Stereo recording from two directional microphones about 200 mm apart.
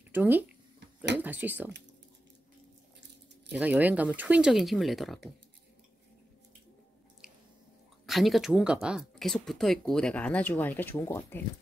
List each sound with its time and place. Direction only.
0.1 s speech: 10° right (ahead or behind)
3.5 s speech: 5° right (ahead or behind)
8.1 s speech: centre (ahead or behind)